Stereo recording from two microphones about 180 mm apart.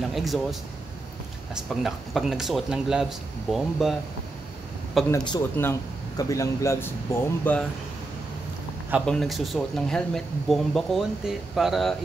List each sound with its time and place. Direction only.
0.0 s speech: centre (ahead or behind)
5.1 s speech: 25° left (ahead or behind)
9.0 s speech: centre (ahead or behind)